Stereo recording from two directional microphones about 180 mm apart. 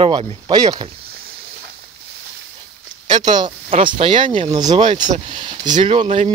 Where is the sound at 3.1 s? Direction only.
25° right (ahead or behind).